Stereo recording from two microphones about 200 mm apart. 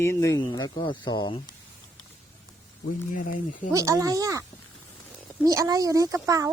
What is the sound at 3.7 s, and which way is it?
Speech, 15° right (ahead or behind).